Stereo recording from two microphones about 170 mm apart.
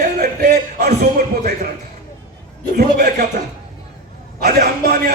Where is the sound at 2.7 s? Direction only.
65° right (ahead or behind).